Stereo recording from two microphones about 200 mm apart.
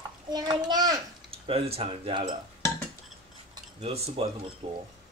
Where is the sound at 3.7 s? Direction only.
30° right (ahead or behind).